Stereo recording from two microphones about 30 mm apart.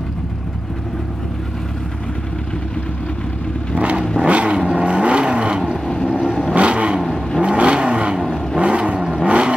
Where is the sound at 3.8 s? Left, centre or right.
Right.